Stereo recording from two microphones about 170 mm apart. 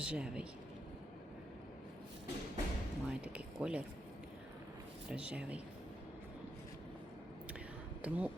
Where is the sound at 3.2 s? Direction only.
5° right (ahead or behind).